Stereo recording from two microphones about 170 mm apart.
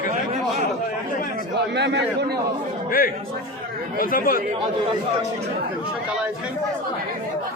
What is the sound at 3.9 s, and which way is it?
Speech, 55° left (ahead or behind).